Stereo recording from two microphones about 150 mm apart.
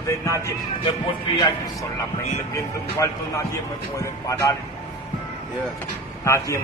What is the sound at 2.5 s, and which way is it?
Speech, 20° left (ahead or behind).